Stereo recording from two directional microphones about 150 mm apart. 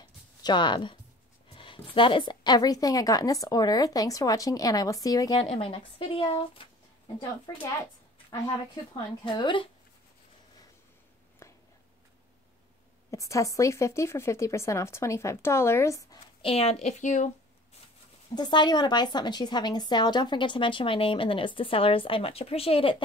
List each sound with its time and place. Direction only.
0.0 s a sound: 30° left (ahead or behind)
1.5 s a woman's voice: 35° left (ahead or behind)
5.5 s a woman's voice: 40° left (ahead or behind)
7.5 s a woman's voice: 25° left (ahead or behind)
8.9 s a woman's voice: 30° left (ahead or behind)
11.4 s whispering: 20° left (ahead or behind)
13.1 s a woman's voice: 20° left (ahead or behind)
16.4 s a woman's voice: 40° left (ahead or behind)
16.8 s speech: 55° left (ahead or behind)
18.3 s a woman's voice: 30° left (ahead or behind)